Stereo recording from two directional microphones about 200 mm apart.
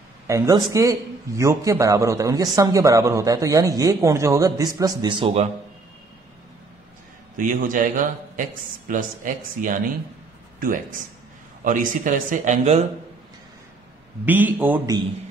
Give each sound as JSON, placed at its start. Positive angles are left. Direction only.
{"t": 0.3, "sound": "a man's voice", "side_deg": -15}
{"t": 7.3, "sound": "a man's voice", "side_deg": -40}
{"t": 14.2, "sound": "a man's voice", "side_deg": -10}